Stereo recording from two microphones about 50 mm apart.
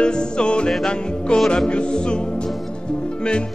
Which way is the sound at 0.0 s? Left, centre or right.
Centre.